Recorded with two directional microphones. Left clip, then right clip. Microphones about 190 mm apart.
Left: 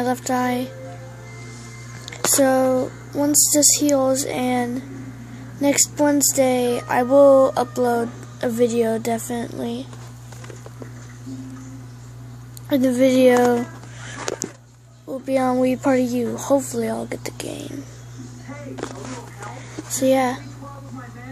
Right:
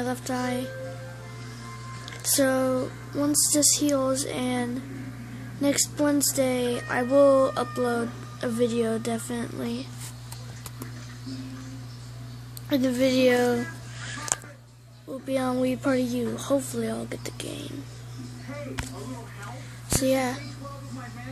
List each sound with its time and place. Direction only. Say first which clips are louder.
0.0 s speech: left 8 dB; 5° right (ahead or behind)
2.0 s speech: left 7 dB; 10° right (ahead or behind)
12.6 s a woman's voice: left 6 dB; 5° right (ahead or behind)
14.3 s a sound: left 4 dB; 10° right (ahead or behind)
15.0 s a woman's voice: left 7 dB; 5° right (ahead or behind)
19.9 s speech: left 6 dB; 5° right (ahead or behind)